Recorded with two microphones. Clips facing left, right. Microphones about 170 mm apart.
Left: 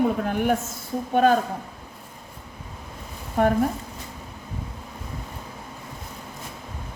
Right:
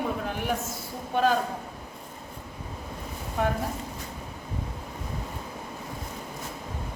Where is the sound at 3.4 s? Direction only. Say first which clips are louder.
Left 7 dB; 55° left (ahead or behind).